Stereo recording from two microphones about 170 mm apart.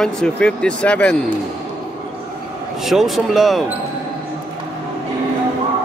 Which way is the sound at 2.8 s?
Centre (ahead or behind).